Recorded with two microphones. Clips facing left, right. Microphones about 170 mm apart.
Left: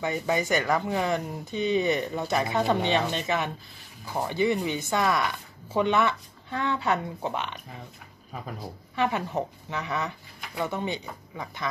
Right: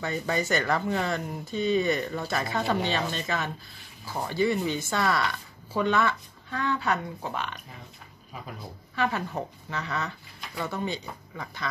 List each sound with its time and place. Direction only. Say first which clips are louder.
0.0 s speech: left 2 dB; 15° left (ahead or behind)
8.9 s speech: left 2 dB; 20° left (ahead or behind)